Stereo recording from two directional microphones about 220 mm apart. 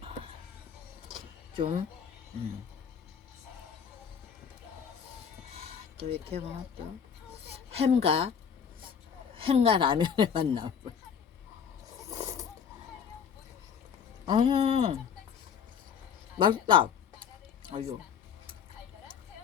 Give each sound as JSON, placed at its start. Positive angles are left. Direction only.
{"t": 1.5, "sound": "a woman's voice", "side_deg": -25}
{"t": 5.5, "sound": "a sound", "side_deg": -25}
{"t": 7.5, "sound": "a woman's voice", "side_deg": -30}
{"t": 9.3, "sound": "a woman's voice", "side_deg": -25}
{"t": 14.3, "sound": "a woman's voice", "side_deg": -20}
{"t": 16.4, "sound": "a woman's voice", "side_deg": -20}
{"t": 17.6, "sound": "a sound", "side_deg": -20}